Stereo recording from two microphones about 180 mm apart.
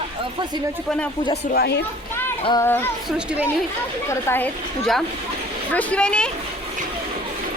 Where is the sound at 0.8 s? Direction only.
5° left (ahead or behind).